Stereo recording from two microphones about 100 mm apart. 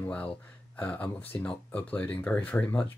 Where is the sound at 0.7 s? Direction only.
15° left (ahead or behind).